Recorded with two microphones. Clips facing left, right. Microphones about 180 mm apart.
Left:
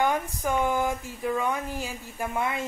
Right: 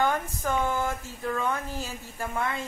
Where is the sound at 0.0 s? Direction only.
15° left (ahead or behind).